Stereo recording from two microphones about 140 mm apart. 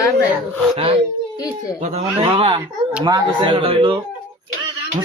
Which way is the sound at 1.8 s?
45° right (ahead or behind).